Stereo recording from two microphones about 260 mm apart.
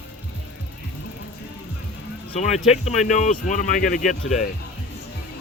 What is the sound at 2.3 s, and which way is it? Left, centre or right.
Speech, left.